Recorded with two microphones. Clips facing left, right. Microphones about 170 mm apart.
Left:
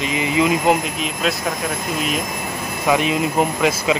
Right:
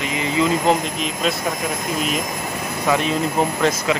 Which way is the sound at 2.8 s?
15° left (ahead or behind).